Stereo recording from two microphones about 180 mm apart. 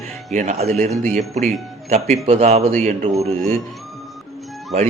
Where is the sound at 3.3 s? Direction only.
45° right (ahead or behind).